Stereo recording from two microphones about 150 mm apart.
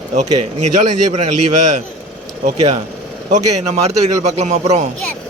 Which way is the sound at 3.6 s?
45° right (ahead or behind).